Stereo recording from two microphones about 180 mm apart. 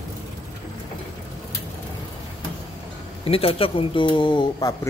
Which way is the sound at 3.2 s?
30° left (ahead or behind).